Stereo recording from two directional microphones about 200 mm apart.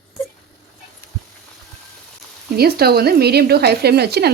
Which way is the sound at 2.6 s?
50° right (ahead or behind).